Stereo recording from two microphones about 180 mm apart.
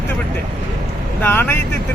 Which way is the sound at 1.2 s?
10° left (ahead or behind).